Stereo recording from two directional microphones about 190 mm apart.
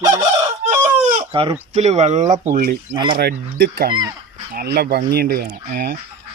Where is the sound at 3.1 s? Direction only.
55° right (ahead or behind).